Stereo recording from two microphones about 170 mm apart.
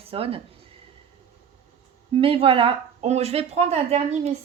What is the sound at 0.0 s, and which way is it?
Speech, 35° right (ahead or behind).